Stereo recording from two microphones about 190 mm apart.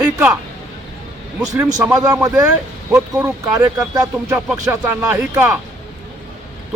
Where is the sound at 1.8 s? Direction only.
5° right (ahead or behind).